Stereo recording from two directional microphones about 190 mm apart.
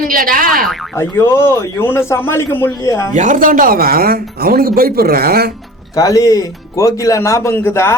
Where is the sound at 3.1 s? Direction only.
40° right (ahead or behind).